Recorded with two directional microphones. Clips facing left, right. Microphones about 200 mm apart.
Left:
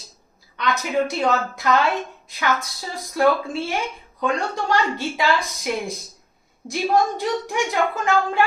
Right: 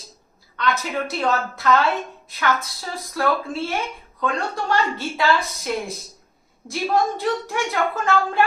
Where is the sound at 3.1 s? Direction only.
20° left (ahead or behind).